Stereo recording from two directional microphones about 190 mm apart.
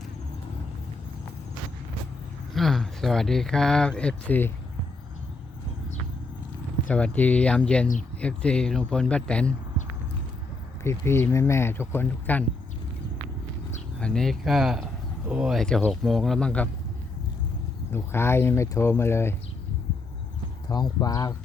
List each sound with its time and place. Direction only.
2.6 s speech: centre (ahead or behind)
6.8 s speech: 5° left (ahead or behind)
10.8 s speech: 15° left (ahead or behind)
14.0 s speech: centre (ahead or behind)
17.9 s speech: 15° left (ahead or behind)
20.7 s speech: 20° left (ahead or behind)